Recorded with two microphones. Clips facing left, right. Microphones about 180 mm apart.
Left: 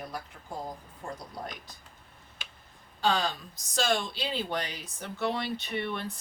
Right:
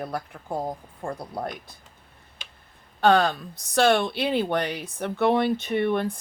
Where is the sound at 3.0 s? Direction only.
60° right (ahead or behind).